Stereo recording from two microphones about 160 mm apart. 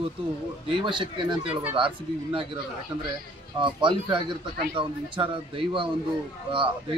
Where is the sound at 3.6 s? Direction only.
30° right (ahead or behind).